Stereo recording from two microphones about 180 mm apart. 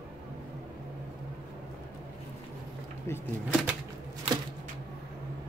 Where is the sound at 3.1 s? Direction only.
15° left (ahead or behind).